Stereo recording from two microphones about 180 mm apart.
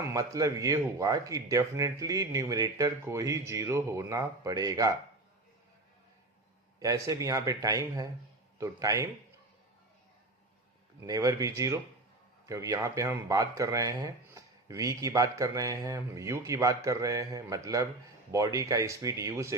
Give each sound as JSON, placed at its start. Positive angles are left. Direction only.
{"t": 0.0, "sound": "speech", "side_deg": -20}
{"t": 6.7, "sound": "speech", "side_deg": -20}
{"t": 11.0, "sound": "speech", "side_deg": -20}